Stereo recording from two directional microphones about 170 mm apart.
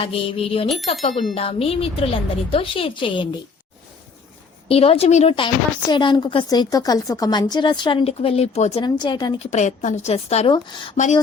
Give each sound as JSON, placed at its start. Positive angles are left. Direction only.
{"t": 0.0, "sound": "a woman's voice", "side_deg": 35}
{"t": 4.7, "sound": "a woman's voice", "side_deg": 35}
{"t": 5.9, "sound": "a woman's voice", "side_deg": 25}
{"t": 8.8, "sound": "a woman's voice", "side_deg": 25}
{"t": 9.4, "sound": "a woman's voice", "side_deg": 45}